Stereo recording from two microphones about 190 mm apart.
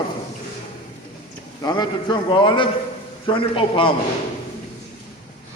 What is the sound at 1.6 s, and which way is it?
A man's voice, 20° left (ahead or behind).